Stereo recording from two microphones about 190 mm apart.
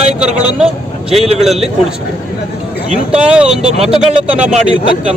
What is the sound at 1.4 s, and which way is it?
Speech, centre (ahead or behind).